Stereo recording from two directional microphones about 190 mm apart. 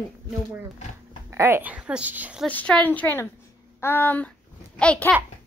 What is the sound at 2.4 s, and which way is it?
A woman's voice, 5° left (ahead or behind).